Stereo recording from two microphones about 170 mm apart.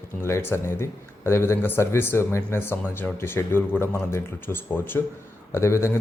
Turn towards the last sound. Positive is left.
turn(degrees=15)  # may be behind; listen again after turning